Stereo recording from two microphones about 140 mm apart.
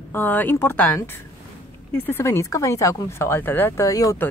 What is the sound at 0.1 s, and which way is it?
Speech, 15° left (ahead or behind).